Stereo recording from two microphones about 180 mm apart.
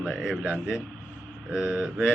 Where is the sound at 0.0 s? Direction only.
Centre (ahead or behind).